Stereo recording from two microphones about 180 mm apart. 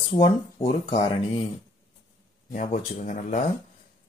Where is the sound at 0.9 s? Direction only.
30° left (ahead or behind).